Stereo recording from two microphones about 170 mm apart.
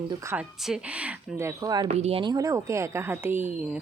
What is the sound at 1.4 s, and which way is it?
Speech, 20° right (ahead or behind).